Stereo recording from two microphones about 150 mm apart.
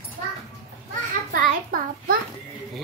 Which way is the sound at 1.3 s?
70° right (ahead or behind).